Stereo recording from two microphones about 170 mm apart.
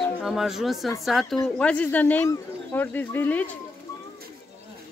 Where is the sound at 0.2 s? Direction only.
Centre (ahead or behind).